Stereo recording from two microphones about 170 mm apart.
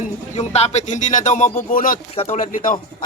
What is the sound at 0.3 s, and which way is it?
Speech, 40° left (ahead or behind).